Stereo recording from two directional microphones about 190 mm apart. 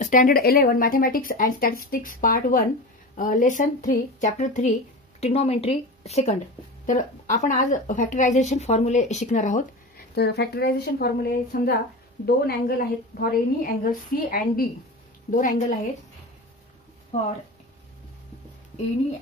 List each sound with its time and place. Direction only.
0.0 s a woman's voice: 45° left (ahead or behind)
10.1 s speech: 60° left (ahead or behind)